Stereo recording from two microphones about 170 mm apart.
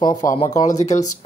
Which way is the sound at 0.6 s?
45° left (ahead or behind).